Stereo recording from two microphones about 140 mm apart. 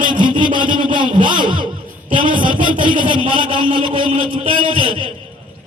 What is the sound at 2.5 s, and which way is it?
Speech, 35° right (ahead or behind).